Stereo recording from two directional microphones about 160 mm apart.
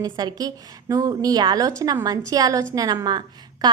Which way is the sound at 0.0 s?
25° right (ahead or behind).